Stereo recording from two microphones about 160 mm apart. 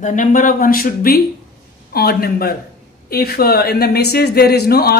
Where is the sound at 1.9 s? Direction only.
75° left (ahead or behind).